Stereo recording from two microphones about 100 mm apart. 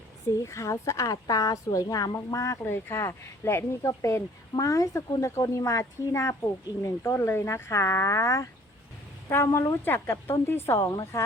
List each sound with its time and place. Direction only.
0.4 s a woman's voice: 30° left (ahead or behind)